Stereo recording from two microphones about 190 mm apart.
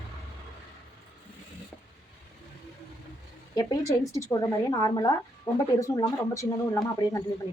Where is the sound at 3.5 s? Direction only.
20° left (ahead or behind).